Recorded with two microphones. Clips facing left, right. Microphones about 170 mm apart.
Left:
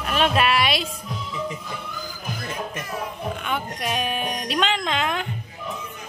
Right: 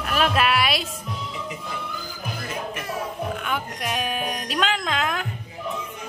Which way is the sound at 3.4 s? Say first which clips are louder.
Left 1 dB; centre (ahead or behind).